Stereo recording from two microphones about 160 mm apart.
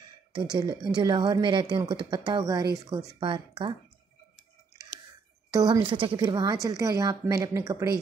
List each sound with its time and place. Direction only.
0.3 s speech: 25° right (ahead or behind)
5.5 s a woman's voice: 25° right (ahead or behind)